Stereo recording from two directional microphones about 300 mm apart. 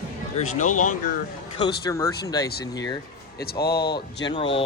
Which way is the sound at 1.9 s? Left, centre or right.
Centre.